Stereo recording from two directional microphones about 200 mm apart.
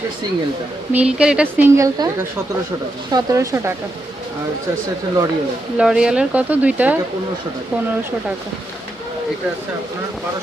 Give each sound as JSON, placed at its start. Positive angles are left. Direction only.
{"t": 0.9, "sound": "speech", "side_deg": -5}
{"t": 3.1, "sound": "speech", "side_deg": -20}
{"t": 5.7, "sound": "speech", "side_deg": -5}